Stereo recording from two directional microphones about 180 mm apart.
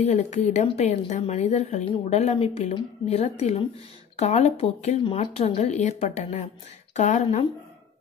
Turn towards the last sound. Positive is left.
turn(degrees=40)  # may be behind; listen again after turning